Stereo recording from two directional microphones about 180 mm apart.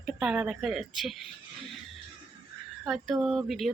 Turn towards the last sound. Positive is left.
turn(degrees=0)  # may be behind; listen again after turning